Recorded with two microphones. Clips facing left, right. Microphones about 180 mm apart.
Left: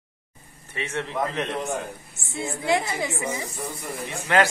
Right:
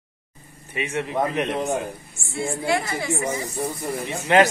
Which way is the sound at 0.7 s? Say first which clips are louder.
Right 3 dB; 15° right (ahead or behind).